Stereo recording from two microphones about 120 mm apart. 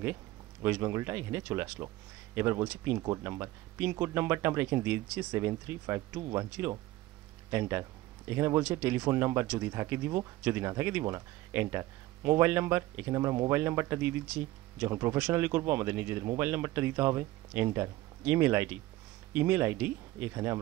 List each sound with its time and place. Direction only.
0.0 s speech: 20° right (ahead or behind)
5.5 s speech: 25° right (ahead or behind)
7.5 s speech: 20° right (ahead or behind)